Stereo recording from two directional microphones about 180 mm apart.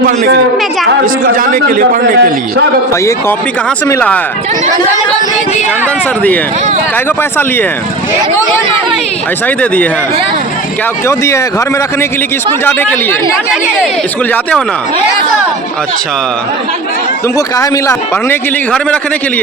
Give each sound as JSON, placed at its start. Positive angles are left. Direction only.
{"t": 1.0, "sound": "a man's voice", "side_deg": -50}
{"t": 2.9, "sound": "speech", "side_deg": 15}
{"t": 6.9, "sound": "speech", "side_deg": 10}
{"t": 9.6, "sound": "speech", "side_deg": 5}
{"t": 11.0, "sound": "speech", "side_deg": 15}
{"t": 12.6, "sound": "speech", "side_deg": 10}
{"t": 17.3, "sound": "speech", "side_deg": 15}